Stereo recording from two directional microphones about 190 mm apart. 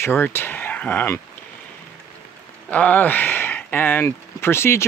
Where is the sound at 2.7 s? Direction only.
10° left (ahead or behind).